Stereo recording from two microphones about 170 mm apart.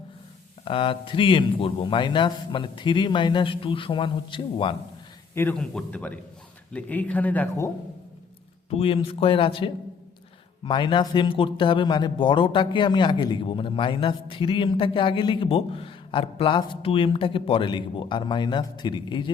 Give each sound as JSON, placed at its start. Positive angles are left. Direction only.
{"t": 0.6, "sound": "a man's voice", "side_deg": 30}
{"t": 5.3, "sound": "speech", "side_deg": 15}
{"t": 8.7, "sound": "a man's voice", "side_deg": 35}